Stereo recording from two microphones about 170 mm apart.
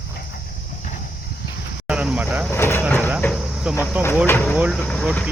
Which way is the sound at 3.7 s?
5° right (ahead or behind).